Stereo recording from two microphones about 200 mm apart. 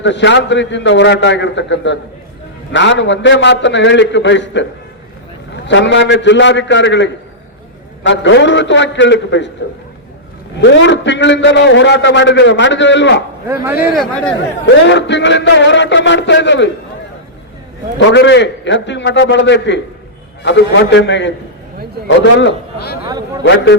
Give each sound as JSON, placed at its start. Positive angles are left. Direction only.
{"t": 0.0, "sound": "a man's voice", "side_deg": 65}
{"t": 5.6, "sound": "a man's voice", "side_deg": 65}
{"t": 10.6, "sound": "a man's voice", "side_deg": 65}
{"t": 13.9, "sound": "speech", "side_deg": 5}
{"t": 14.8, "sound": "a man's voice", "side_deg": 60}
{"t": 18.1, "sound": "a man's voice", "side_deg": 60}
{"t": 23.0, "sound": "a man's voice", "side_deg": -20}
{"t": 23.4, "sound": "a man's voice", "side_deg": 65}